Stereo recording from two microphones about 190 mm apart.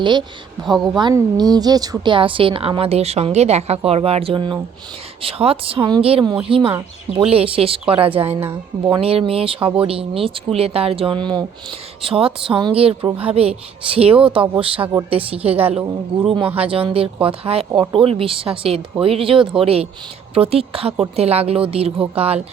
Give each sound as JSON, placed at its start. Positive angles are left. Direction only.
{"t": 0.0, "sound": "a woman's voice", "side_deg": -25}